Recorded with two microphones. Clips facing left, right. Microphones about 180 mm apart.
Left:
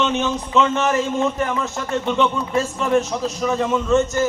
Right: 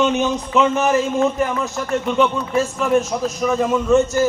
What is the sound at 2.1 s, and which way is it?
A man's voice, 5° right (ahead or behind).